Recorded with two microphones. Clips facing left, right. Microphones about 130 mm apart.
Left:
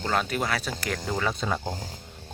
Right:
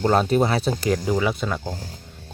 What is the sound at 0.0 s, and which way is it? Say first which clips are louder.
Speech: right 9 dB; 30° right (ahead or behind).